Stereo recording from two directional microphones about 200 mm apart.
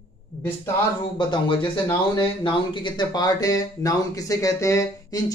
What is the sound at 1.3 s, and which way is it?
Speech, 25° left (ahead or behind).